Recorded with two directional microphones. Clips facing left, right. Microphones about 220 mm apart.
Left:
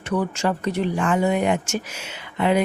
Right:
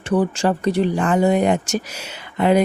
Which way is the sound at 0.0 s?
30° right (ahead or behind).